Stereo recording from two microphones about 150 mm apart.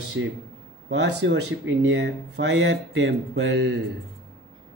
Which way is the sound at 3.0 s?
90° right.